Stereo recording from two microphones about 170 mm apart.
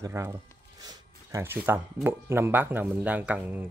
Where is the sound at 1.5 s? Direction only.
15° right (ahead or behind).